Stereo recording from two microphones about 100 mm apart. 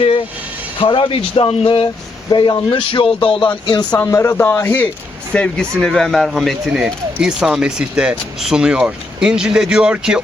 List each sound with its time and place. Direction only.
0.8 s speech: 60° left (ahead or behind)
2.3 s speech: 50° left (ahead or behind)
3.9 s speech: 25° left (ahead or behind); by 10.2 s 10° right (ahead or behind)